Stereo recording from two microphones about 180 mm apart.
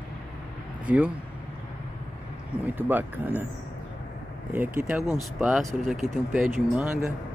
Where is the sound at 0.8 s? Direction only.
10° right (ahead or behind).